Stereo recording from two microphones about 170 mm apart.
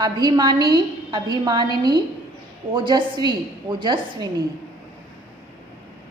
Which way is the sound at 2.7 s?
25° right (ahead or behind).